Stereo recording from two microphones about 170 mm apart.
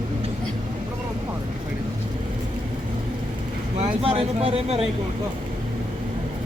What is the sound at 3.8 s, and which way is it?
Speech, 35° right (ahead or behind).